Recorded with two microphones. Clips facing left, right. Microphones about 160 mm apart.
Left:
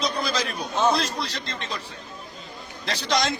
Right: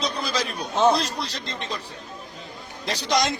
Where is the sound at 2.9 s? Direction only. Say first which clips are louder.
Right 1 dB; 15° right (ahead or behind).